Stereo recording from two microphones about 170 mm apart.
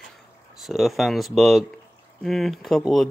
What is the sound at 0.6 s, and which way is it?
Speech, centre (ahead or behind).